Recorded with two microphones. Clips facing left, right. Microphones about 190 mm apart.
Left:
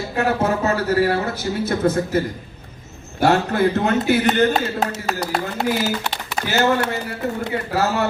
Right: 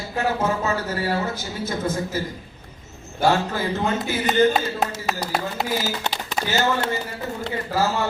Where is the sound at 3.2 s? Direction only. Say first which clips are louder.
Left 4 dB; 65° left (ahead or behind).